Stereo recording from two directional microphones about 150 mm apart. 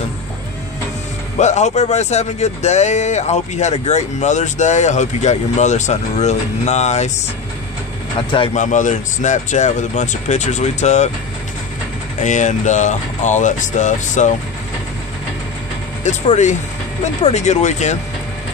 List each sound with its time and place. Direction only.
1.4 s speech: 50° left (ahead or behind)
8.2 s speech: 30° left (ahead or behind)
8.5 s speech: 55° left (ahead or behind)
12.2 s speech: 55° left (ahead or behind)
16.0 s speech: 50° left (ahead or behind)